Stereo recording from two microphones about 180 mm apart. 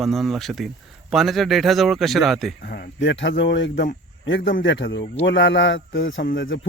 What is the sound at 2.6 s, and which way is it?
Speech, 65° left (ahead or behind).